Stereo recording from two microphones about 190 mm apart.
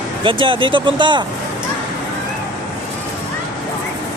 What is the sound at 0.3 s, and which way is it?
Speech, 25° right (ahead or behind).